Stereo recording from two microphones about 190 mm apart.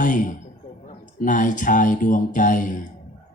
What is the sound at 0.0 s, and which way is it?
Speech, 45° left (ahead or behind).